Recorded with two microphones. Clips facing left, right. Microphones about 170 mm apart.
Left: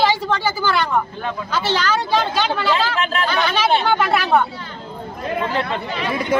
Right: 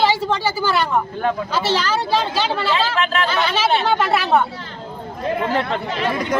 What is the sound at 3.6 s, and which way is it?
Speech, 5° right (ahead or behind).